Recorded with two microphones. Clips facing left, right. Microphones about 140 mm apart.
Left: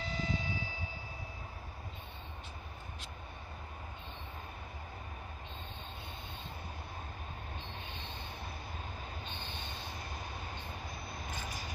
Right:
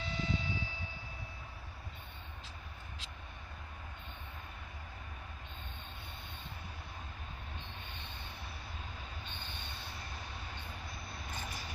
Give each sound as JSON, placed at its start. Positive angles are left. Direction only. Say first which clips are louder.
{"t": 0.0, "sound": "vehicle", "louder": "even", "side_deg": 40}
{"t": 9.4, "sound": "train", "louder": "left 3 dB", "side_deg": 40}